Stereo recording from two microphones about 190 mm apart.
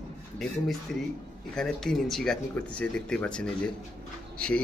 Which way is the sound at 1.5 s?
5° left (ahead or behind).